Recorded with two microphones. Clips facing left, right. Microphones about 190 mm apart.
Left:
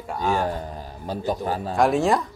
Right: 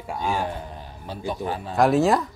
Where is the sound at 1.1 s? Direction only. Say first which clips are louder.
Left 3 dB; 40° left (ahead or behind).